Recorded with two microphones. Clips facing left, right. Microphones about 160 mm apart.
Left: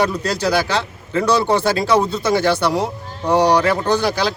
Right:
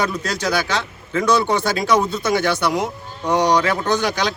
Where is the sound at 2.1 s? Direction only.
30° left (ahead or behind).